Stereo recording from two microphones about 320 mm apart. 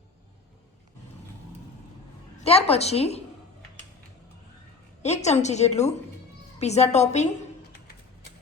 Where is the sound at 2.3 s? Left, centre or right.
Centre.